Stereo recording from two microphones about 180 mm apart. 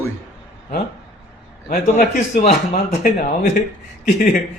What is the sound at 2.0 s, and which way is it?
Speech, 45° left (ahead or behind).